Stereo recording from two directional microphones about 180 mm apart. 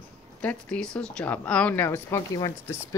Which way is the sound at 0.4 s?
5° left (ahead or behind).